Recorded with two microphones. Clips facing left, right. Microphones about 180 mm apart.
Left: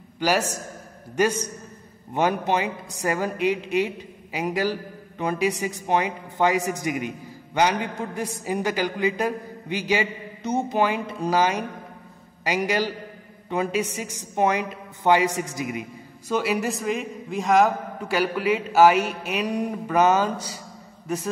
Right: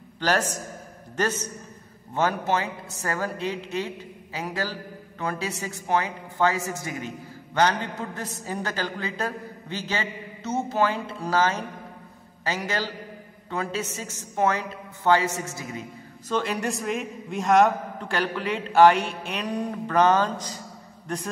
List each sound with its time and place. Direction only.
0.2 s a woman's voice: 10° left (ahead or behind)